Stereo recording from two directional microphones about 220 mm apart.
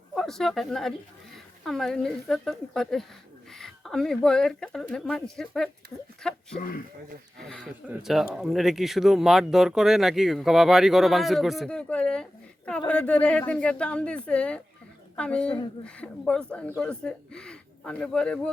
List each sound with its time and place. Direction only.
0.1 s speech: centre (ahead or behind)
6.6 s speech: 40° left (ahead or behind)
7.4 s a woman's voice: centre (ahead or behind)